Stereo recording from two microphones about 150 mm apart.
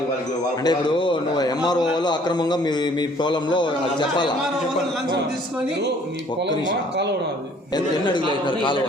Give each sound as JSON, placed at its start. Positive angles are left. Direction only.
{"t": 0.6, "sound": "a man's voice", "side_deg": 30}
{"t": 7.7, "sound": "speech", "side_deg": 30}